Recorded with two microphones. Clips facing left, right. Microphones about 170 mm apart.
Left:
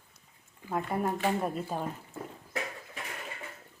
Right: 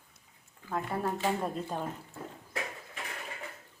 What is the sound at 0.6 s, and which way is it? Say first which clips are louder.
A woman's voice: left 2 dB; 15° left (ahead or behind).